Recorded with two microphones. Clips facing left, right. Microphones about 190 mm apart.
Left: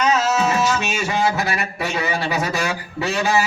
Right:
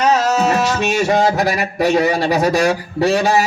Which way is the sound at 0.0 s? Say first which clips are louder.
Right 4 dB; 40° right (ahead or behind).